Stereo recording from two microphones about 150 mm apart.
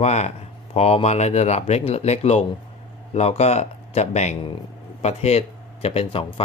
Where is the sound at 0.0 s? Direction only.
50° left (ahead or behind).